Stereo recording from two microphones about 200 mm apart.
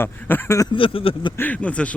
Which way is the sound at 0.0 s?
10° left (ahead or behind).